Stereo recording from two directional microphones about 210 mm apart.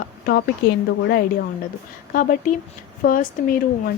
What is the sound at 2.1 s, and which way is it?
A woman's voice, 40° left (ahead or behind).